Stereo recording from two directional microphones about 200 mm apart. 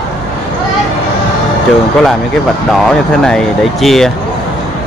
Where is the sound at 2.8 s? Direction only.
Centre (ahead or behind).